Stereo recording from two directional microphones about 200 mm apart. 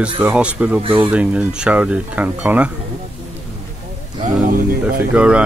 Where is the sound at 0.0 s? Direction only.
5° right (ahead or behind).